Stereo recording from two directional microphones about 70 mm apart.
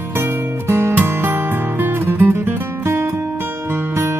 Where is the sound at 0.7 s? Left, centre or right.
Right.